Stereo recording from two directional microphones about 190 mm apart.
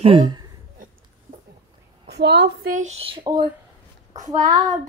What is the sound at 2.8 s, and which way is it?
Speech, 35° right (ahead or behind).